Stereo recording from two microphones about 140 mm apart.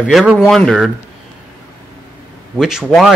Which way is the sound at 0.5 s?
Centre (ahead or behind).